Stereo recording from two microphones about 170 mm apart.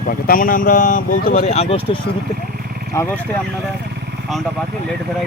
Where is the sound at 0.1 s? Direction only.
55° left (ahead or behind); by 2.0 s 35° left (ahead or behind).